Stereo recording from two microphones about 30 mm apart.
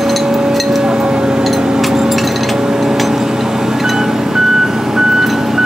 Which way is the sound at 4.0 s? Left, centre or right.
Centre.